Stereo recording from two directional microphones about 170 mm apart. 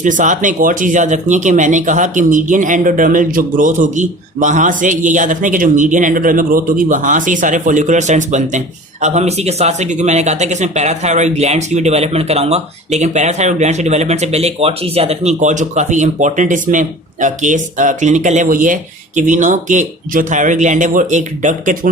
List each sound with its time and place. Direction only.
0.0 s speech: 50° right (ahead or behind)